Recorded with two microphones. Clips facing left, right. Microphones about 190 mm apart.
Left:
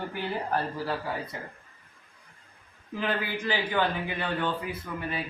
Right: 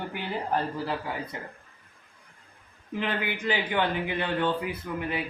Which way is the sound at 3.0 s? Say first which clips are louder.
Even; 20° right (ahead or behind).